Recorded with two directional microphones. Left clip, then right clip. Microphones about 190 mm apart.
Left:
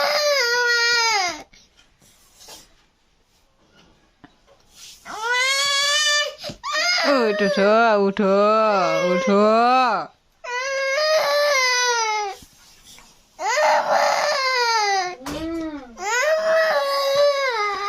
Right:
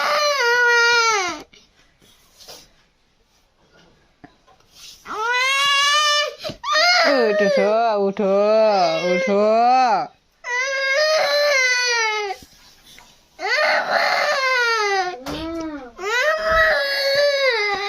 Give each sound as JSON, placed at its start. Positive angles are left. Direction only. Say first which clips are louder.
{"t": 0.0, "sound": "baby cry", "louder": "right 1 dB", "side_deg": 15}
{"t": 5.0, "sound": "goat", "louder": "right 1 dB", "side_deg": 15}
{"t": 7.8, "sound": "speech", "louder": "left 1 dB", "side_deg": 30}
{"t": 9.3, "sound": "speech", "louder": "right 1 dB", "side_deg": 20}
{"t": 9.8, "sound": "speech", "louder": "right 3 dB", "side_deg": 0}
{"t": 10.4, "sound": "baby cry", "louder": "right 2 dB", "side_deg": 15}